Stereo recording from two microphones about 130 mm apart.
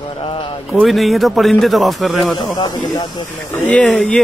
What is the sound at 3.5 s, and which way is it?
Speech, 10° left (ahead or behind).